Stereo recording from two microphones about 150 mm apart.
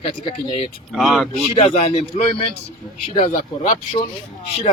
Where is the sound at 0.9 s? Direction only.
Centre (ahead or behind).